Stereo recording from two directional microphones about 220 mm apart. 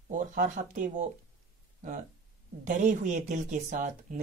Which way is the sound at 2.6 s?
35° right (ahead or behind).